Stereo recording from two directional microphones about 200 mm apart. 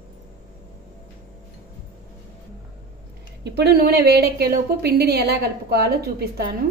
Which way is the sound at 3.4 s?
55° right (ahead or behind).